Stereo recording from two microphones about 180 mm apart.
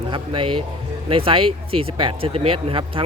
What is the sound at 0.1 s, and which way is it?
Speech, 30° right (ahead or behind).